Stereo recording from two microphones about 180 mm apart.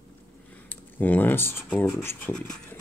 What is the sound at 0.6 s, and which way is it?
Speech, 10° left (ahead or behind).